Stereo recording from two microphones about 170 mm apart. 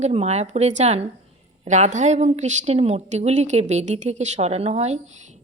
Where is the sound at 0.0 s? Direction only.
40° right (ahead or behind).